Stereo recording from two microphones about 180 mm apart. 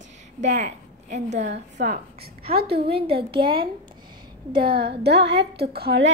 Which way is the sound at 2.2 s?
60° right (ahead or behind).